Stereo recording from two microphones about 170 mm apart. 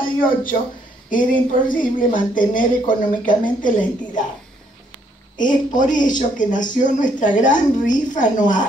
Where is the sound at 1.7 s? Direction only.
55° left (ahead or behind).